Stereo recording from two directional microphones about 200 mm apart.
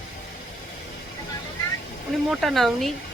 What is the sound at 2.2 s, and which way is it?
Speech, centre (ahead or behind).